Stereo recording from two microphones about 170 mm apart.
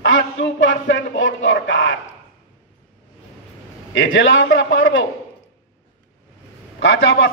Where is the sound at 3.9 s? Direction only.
90° left.